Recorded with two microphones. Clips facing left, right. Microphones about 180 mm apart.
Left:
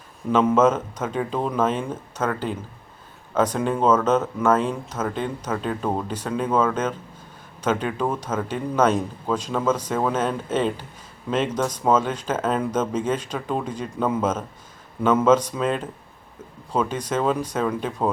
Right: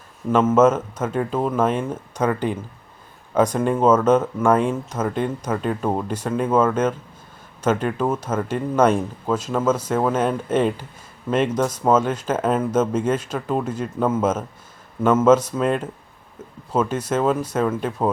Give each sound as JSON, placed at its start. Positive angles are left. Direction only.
{"t": 0.3, "sound": "speech", "side_deg": -5}